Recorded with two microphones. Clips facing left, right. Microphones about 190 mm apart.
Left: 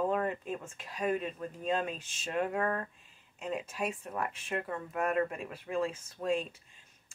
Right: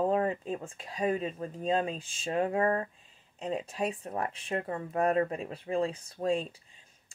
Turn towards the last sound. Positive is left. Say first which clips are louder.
# right 2 dB
turn(degrees=-35)  # may be behind; listen again after turning